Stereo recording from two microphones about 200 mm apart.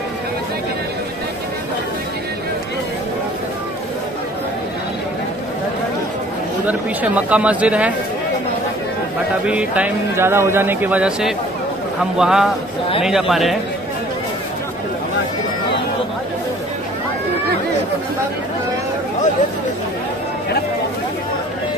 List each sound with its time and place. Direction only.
6.7 s speech: 5° right (ahead or behind)
9.5 s speech: 5° right (ahead or behind)